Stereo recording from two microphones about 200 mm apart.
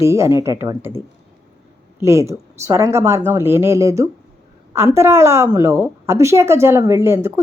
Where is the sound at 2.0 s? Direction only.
15° right (ahead or behind).